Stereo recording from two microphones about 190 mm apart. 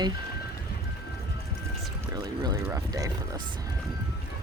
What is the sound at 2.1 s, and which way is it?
Speech, 20° right (ahead or behind).